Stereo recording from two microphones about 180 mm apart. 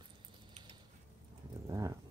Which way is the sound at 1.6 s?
20° right (ahead or behind).